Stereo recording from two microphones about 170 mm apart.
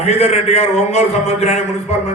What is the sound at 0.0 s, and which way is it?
A man's voice, 40° left (ahead or behind).